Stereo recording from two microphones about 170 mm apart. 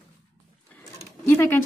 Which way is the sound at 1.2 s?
15° left (ahead or behind).